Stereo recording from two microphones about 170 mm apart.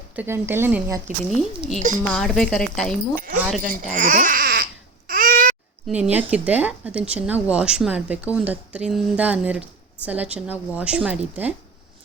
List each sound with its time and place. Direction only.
0.2 s speech: 15° right (ahead or behind)
1.2 s speech: 5° left (ahead or behind)
3.2 s speech: 55° right (ahead or behind)
3.6 s crying: 50° right (ahead or behind)
5.9 s speech: 5° right (ahead or behind)